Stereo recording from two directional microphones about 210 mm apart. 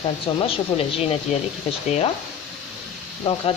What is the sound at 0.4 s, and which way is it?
Speech, 25° left (ahead or behind).